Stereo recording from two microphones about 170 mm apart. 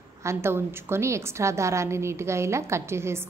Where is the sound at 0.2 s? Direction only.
15° right (ahead or behind).